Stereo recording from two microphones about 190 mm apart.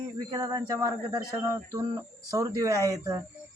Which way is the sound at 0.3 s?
20° right (ahead or behind).